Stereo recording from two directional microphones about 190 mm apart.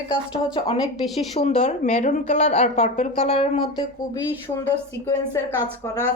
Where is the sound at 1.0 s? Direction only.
Centre (ahead or behind).